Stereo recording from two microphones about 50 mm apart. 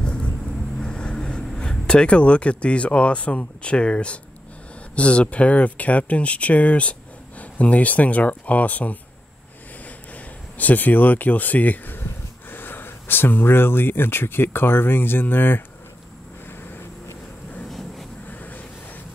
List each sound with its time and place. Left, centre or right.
0.0 s vehicle: left
0.7 s speech: centre; by 8.9 s left
10.1 s speech: left
17.6 s vehicle: centre